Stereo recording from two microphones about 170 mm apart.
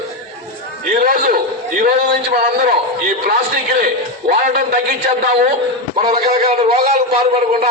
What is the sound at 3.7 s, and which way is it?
Speech, 60° right (ahead or behind).